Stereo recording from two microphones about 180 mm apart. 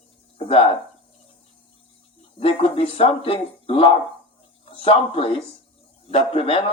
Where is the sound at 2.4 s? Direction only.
30° left (ahead or behind).